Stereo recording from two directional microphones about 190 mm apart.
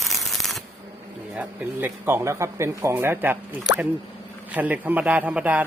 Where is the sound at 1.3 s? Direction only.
5° right (ahead or behind).